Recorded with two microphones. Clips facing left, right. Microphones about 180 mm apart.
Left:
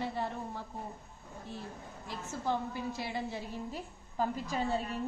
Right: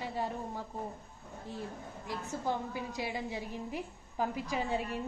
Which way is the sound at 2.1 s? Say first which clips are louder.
Even; 15° right (ahead or behind).